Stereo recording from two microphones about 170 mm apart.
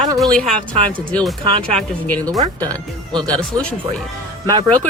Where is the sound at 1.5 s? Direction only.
35° right (ahead or behind).